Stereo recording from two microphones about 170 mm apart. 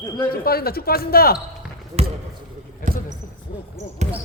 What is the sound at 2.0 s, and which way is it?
Basketball bounce, 35° right (ahead or behind).